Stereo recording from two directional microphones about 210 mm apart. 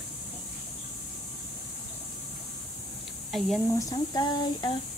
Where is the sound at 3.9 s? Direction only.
20° left (ahead or behind).